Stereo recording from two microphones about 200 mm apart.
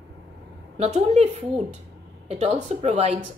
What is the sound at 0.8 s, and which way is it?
Speech, 35° right (ahead or behind).